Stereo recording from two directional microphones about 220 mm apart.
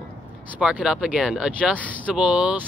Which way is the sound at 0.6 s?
5° right (ahead or behind).